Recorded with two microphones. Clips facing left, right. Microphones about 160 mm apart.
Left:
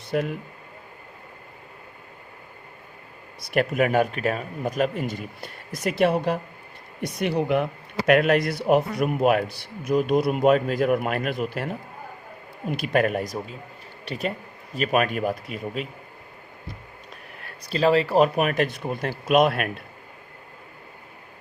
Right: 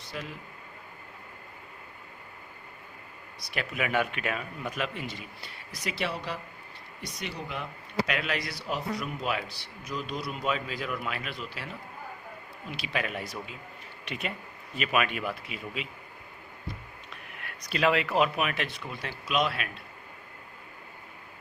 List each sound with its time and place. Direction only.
0.1 s speech: 55° left (ahead or behind)
3.5 s speech: 50° left (ahead or behind)
17.3 s speech: 35° left (ahead or behind); by 19.8 s 55° left (ahead or behind)